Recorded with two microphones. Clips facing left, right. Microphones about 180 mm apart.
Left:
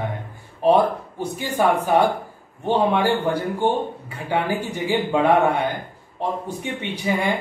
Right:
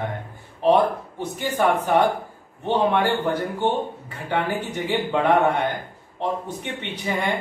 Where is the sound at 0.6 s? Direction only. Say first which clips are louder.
Left 1 dB; 10° left (ahead or behind).